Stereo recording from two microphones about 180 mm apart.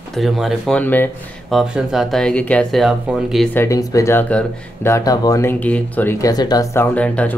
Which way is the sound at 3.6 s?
20° left (ahead or behind).